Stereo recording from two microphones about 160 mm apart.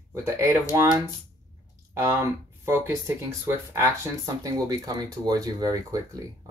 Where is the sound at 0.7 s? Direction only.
20° right (ahead or behind).